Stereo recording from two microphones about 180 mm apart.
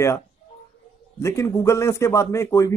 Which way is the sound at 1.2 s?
15° left (ahead or behind).